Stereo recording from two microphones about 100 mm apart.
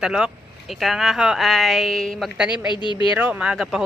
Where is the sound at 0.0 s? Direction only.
10° right (ahead or behind).